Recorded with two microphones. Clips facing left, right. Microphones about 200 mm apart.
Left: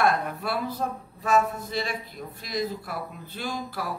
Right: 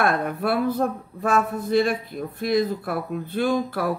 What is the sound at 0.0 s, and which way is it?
Speech, 55° right (ahead or behind).